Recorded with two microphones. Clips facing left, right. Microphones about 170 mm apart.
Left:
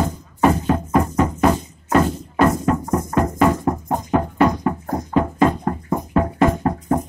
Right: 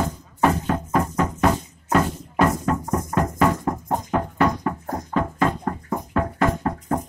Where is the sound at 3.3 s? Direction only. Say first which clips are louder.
Left 3 dB; 10° left (ahead or behind).